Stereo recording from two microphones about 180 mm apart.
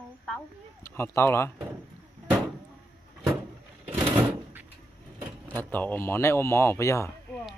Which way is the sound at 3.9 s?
30° right (ahead or behind).